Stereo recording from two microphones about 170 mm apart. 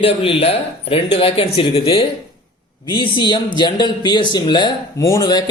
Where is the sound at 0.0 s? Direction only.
35° left (ahead or behind).